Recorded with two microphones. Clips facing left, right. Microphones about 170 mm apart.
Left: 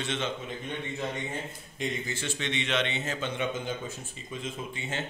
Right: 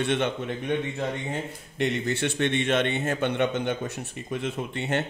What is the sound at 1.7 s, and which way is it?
A man's voice, 70° right (ahead or behind).